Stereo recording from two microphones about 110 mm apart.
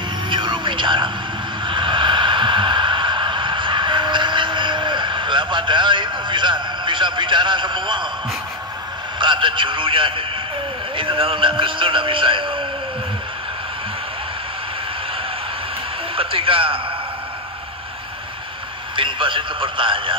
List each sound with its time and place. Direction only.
0.3 s a sound: 50° right (ahead or behind)
9.2 s a man's voice: 50° right (ahead or behind)
16.2 s speech: 55° right (ahead or behind)
18.9 s a man's voice: 50° right (ahead or behind)